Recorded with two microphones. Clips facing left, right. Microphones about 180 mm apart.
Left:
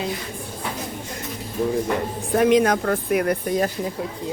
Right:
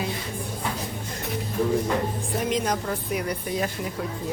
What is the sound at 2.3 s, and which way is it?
Speech, 65° left (ahead or behind).